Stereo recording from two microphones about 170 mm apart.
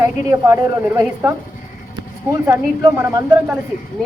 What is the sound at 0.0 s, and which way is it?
A woman's voice, 20° right (ahead or behind).